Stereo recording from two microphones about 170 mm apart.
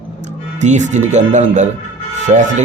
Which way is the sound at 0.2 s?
45° right (ahead or behind).